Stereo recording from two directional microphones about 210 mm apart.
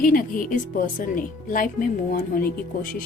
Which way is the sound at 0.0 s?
40° left (ahead or behind).